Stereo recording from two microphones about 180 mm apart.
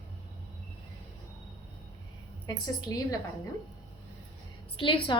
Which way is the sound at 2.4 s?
20° left (ahead or behind).